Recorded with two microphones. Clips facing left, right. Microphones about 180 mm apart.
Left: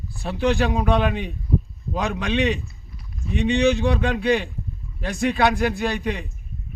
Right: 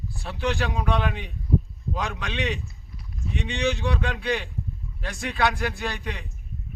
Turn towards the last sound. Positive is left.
turn(degrees=15)  # may be behind; listen again after turning